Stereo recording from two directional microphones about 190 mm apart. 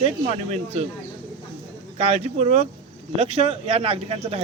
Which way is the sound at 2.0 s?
35° right (ahead or behind).